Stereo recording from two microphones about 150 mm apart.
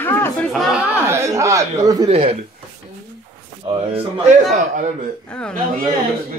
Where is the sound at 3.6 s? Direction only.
35° right (ahead or behind).